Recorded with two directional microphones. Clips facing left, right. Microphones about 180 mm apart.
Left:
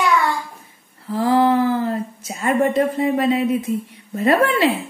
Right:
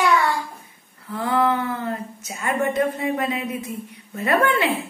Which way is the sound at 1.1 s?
30° left (ahead or behind).